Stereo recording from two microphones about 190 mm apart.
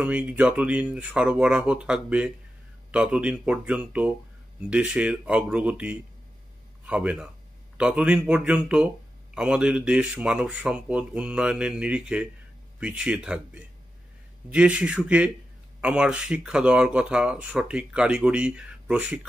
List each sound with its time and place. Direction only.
0.0 s a man's voice: 5° right (ahead or behind)